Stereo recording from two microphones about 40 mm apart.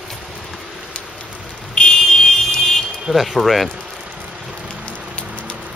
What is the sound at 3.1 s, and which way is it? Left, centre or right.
Speech, centre.